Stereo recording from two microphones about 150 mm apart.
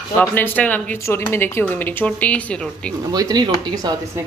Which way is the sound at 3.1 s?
25° right (ahead or behind).